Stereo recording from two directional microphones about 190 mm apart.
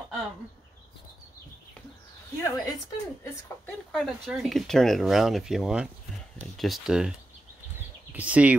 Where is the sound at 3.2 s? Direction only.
5° left (ahead or behind).